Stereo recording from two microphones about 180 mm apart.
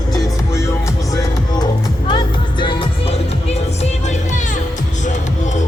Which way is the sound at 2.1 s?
25° left (ahead or behind).